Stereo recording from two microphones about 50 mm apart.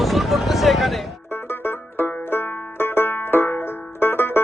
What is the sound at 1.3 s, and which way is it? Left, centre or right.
Banjo, left.